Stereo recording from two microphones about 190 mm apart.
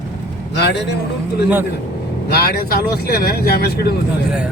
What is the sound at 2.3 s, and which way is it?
Speech, 55° left (ahead or behind).